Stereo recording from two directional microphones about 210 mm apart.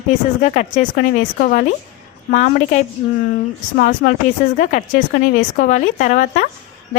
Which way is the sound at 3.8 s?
45° left (ahead or behind).